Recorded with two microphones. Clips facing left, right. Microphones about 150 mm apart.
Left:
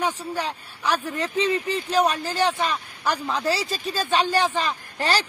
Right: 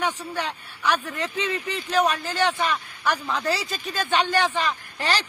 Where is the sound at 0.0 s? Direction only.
35° left (ahead or behind).